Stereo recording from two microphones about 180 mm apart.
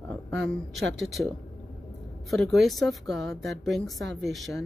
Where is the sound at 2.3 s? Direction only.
Centre (ahead or behind).